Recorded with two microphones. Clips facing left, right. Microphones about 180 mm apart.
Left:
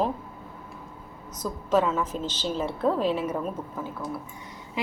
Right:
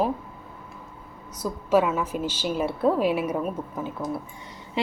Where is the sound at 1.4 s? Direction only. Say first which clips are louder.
Right 2 dB; 10° right (ahead or behind).